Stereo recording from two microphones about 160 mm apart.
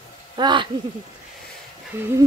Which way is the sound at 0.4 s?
30° right (ahead or behind).